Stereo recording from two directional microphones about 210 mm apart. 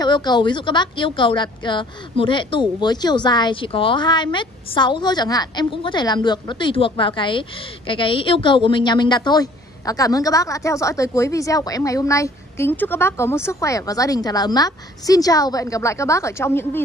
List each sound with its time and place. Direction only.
0.0 s speech: 20° left (ahead or behind)